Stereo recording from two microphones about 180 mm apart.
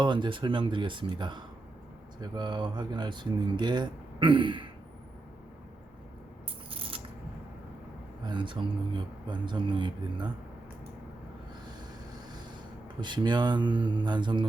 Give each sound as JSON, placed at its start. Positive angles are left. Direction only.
{"t": 0.0, "sound": "speech", "side_deg": -25}
{"t": 6.7, "sound": "a sound", "side_deg": -30}
{"t": 8.3, "sound": "speech", "side_deg": -25}
{"t": 13.0, "sound": "speech", "side_deg": -25}